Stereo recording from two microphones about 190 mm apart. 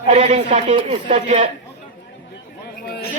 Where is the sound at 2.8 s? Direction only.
55° left (ahead or behind).